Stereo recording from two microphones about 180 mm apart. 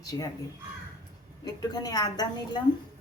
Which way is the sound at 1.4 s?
20° left (ahead or behind).